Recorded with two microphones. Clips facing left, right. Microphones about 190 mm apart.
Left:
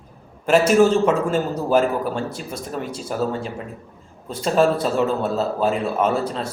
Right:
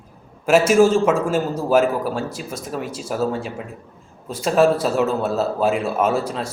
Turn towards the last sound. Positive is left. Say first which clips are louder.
# right 1 dB
turn(degrees=-5)  # may be behind; listen again after turning